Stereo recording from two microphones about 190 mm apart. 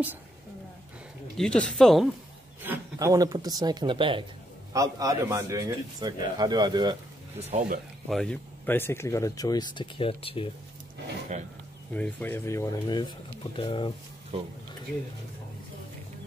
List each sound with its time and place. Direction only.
1.3 s speech: 5° left (ahead or behind)
2.6 s a man's voice: 15° right (ahead or behind)
7.5 s speech: 45° right (ahead or behind)
8.1 s speech: 5° left (ahead or behind); by 10.5 s 30° left (ahead or behind)
11.3 s speech: 40° right (ahead or behind)
11.9 s speech: 10° left (ahead or behind); by 13.9 s 25° left (ahead or behind)
14.3 s speech: 30° right (ahead or behind)